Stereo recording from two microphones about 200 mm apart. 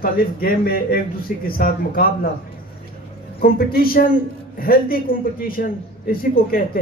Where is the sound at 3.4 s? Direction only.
45° left (ahead or behind).